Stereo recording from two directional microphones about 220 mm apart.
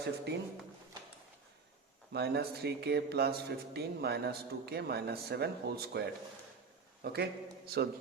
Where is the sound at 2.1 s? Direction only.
45° right (ahead or behind).